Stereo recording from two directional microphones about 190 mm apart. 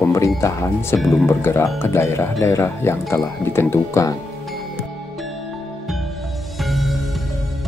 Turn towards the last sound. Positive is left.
turn(degrees=0)  # may be behind; listen again after turning